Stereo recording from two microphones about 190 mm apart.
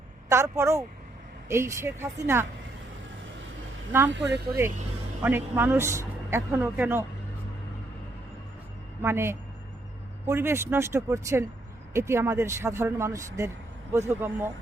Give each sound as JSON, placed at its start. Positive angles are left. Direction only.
{"t": 0.3, "sound": "speech", "side_deg": -15}
{"t": 4.1, "sound": "speech", "side_deg": -65}
{"t": 5.2, "sound": "speech", "side_deg": -10}
{"t": 9.0, "sound": "speech", "side_deg": -15}